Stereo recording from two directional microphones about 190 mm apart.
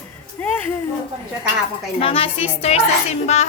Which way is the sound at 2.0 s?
30° left (ahead or behind).